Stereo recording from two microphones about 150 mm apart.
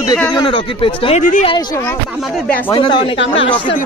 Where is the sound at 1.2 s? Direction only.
55° left (ahead or behind).